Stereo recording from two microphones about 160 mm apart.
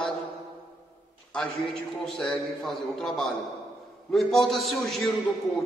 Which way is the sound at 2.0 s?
Centre (ahead or behind).